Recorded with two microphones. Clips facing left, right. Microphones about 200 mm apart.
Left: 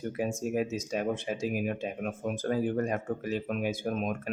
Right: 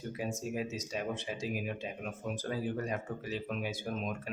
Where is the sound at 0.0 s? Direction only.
55° left (ahead or behind).